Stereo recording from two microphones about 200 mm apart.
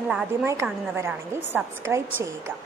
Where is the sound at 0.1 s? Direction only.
10° right (ahead or behind).